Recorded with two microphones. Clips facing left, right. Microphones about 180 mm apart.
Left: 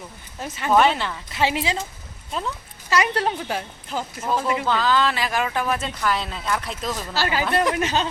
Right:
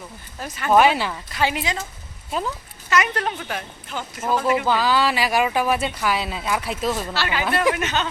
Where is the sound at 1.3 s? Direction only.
25° left (ahead or behind).